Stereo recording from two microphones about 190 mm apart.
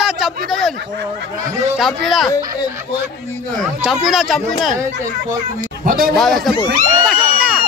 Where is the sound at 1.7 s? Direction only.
Centre (ahead or behind).